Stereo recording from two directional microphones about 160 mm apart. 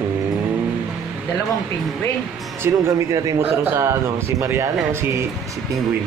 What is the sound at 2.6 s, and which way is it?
A man's voice, 20° right (ahead or behind).